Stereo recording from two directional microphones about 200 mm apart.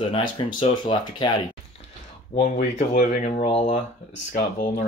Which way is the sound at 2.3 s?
40° left (ahead or behind).